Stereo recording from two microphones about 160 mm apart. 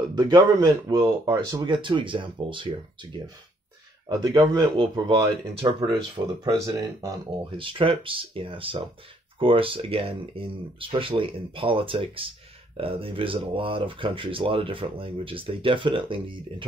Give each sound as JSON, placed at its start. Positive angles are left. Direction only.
{"t": 0.1, "sound": "speech", "side_deg": -25}
{"t": 5.9, "sound": "speech", "side_deg": -20}
{"t": 7.5, "sound": "speech", "side_deg": -30}